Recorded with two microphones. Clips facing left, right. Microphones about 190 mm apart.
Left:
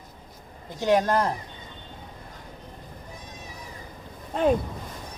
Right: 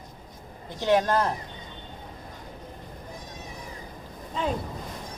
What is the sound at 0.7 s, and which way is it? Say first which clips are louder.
Speech: left 1 dB; 15° left (ahead or behind).